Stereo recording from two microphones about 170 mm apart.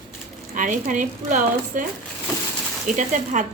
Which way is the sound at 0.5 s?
50° right (ahead or behind).